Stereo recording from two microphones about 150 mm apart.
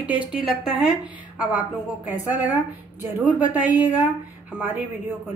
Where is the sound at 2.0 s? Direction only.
10° right (ahead or behind).